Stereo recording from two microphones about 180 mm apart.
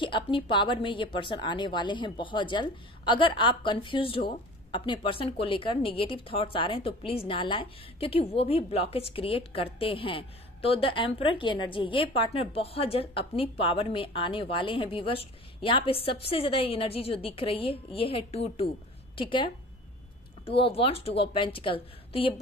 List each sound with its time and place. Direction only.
0.0 s a woman's voice: 25° left (ahead or behind)